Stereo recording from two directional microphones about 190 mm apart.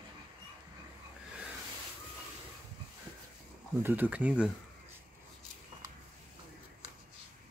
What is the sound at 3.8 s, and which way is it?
Speech, 10° right (ahead or behind).